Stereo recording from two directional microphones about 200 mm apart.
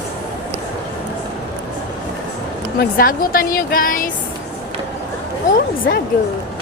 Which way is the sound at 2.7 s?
45° left (ahead or behind).